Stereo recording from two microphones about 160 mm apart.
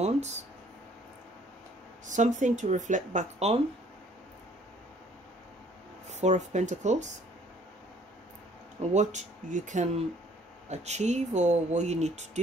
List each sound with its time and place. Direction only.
0.0 s a sound: 45° right (ahead or behind)
2.0 s speech: 50° right (ahead or behind)
6.0 s speech: 45° right (ahead or behind)
8.8 s speech: 45° right (ahead or behind)